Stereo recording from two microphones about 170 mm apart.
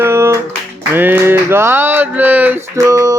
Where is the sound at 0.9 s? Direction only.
10° right (ahead or behind).